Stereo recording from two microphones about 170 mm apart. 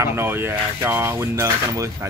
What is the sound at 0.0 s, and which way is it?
Speech, 15° right (ahead or behind).